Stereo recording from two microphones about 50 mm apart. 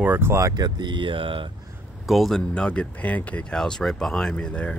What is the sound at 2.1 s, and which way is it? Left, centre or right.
Speech, centre.